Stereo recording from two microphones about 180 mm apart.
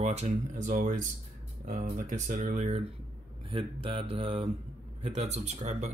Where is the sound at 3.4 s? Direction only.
30° right (ahead or behind).